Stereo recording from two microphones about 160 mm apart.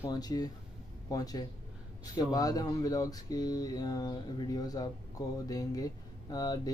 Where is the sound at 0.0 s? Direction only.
25° left (ahead or behind).